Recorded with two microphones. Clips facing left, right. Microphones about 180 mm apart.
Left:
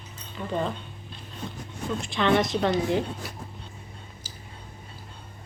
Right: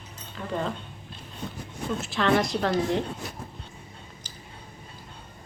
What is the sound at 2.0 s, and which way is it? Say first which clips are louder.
Speech: left 1 dB; centre (ahead or behind).